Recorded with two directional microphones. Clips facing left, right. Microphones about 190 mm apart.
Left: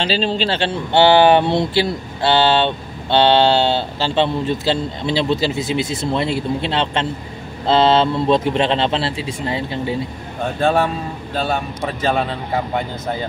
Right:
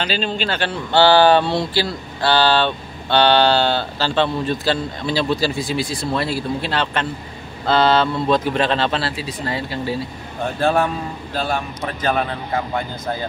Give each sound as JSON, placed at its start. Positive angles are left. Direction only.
{"t": 0.0, "sound": "speech", "side_deg": 35}
{"t": 10.6, "sound": "speech", "side_deg": 0}